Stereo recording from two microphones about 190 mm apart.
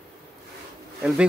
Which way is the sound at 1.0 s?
5° right (ahead or behind).